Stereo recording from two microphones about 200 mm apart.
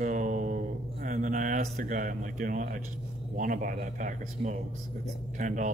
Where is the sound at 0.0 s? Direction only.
40° right (ahead or behind).